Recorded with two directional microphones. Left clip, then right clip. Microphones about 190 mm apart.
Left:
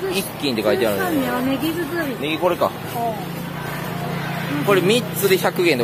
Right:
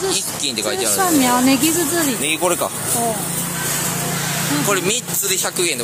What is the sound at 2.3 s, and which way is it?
Speech, 20° right (ahead or behind).